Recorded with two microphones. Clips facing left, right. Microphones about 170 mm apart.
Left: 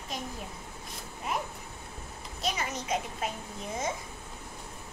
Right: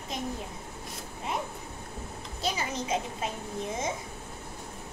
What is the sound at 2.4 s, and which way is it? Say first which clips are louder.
Speech: right 2 dB; 30° right (ahead or behind).